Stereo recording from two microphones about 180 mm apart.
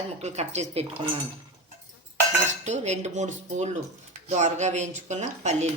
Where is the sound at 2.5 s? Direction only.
40° right (ahead or behind).